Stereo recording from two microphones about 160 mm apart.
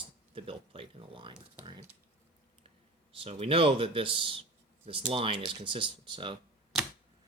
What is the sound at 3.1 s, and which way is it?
Speech, 35° right (ahead or behind).